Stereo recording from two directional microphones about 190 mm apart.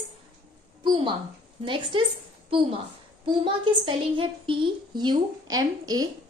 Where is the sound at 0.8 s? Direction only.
25° right (ahead or behind).